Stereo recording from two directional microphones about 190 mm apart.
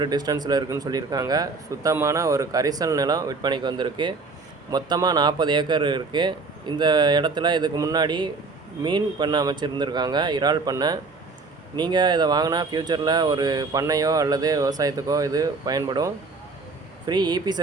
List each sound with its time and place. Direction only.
0.0 s speech: 20° right (ahead or behind)